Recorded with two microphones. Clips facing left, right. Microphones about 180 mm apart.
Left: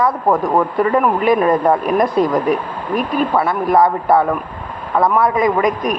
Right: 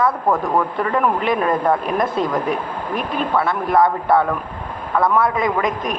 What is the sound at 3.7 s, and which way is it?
Speech, 20° left (ahead or behind).